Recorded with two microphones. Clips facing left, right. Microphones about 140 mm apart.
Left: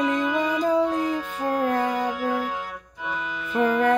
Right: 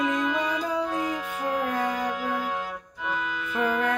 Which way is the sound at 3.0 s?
Centre (ahead or behind).